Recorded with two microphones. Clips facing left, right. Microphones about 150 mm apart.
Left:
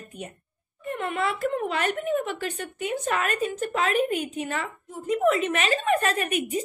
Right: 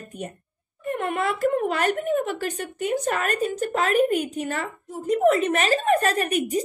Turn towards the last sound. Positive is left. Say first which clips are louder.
# right 3 dB
turn(degrees=-40)  # may be behind; listen again after turning